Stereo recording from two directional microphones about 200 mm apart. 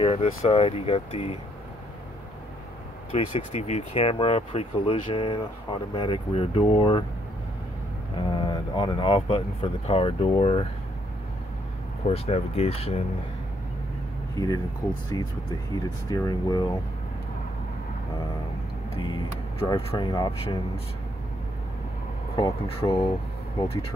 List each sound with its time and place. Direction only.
0.0 s speech: 30° left (ahead or behind)
3.1 s speech: 30° left (ahead or behind)
8.2 s speech: 25° left (ahead or behind)
12.1 s speech: 30° left (ahead or behind)
14.3 s speech: 20° left (ahead or behind)
18.9 s speech: 25° left (ahead or behind)
22.4 s speech: 30° left (ahead or behind)